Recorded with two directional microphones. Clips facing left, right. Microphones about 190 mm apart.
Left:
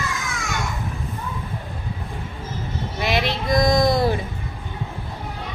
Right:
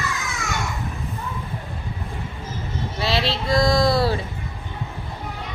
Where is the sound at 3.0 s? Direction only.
15° left (ahead or behind).